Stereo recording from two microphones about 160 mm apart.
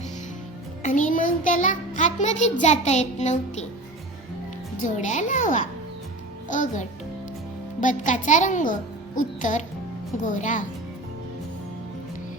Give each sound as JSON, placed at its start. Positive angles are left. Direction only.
{"t": 0.8, "sound": "music", "side_deg": 50}
{"t": 4.8, "sound": "music", "side_deg": 50}